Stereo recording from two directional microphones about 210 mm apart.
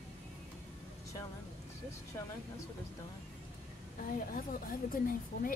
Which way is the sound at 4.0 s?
40° left (ahead or behind).